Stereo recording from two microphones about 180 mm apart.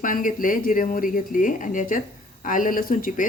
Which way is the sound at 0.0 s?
50° left (ahead or behind).